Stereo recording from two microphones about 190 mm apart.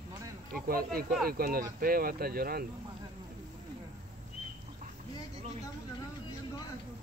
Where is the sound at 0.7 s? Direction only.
50° right (ahead or behind).